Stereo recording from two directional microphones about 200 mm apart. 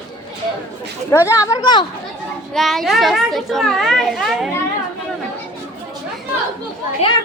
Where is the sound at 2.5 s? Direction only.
Centre (ahead or behind).